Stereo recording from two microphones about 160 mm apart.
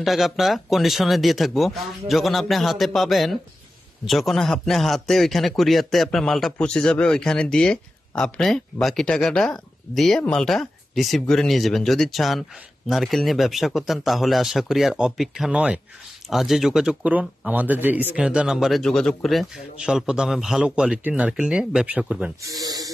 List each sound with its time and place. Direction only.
0.0 s a man's voice: centre (ahead or behind)
22.4 s speech: 25° right (ahead or behind)